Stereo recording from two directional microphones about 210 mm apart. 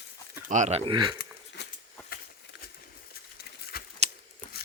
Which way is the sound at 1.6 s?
55° left (ahead or behind).